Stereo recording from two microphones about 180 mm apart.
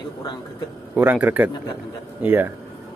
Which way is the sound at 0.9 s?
10° right (ahead or behind).